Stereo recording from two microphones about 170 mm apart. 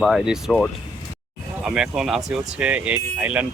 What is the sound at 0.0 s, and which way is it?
Speech, centre (ahead or behind).